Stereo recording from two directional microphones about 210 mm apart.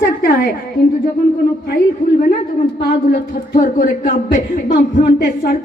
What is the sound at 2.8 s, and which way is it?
A man's voice, 45° left (ahead or behind).